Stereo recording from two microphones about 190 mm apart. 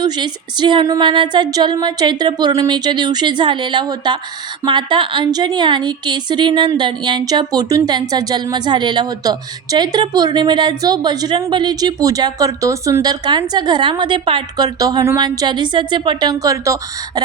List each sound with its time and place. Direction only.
0.0 s a woman's voice: 25° right (ahead or behind)